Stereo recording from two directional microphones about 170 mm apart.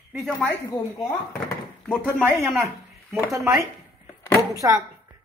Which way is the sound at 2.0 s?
10° right (ahead or behind).